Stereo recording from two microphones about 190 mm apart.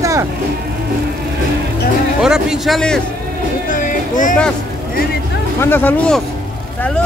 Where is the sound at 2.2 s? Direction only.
5° right (ahead or behind).